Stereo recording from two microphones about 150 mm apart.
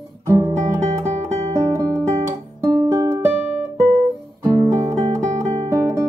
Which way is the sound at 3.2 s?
10° right (ahead or behind).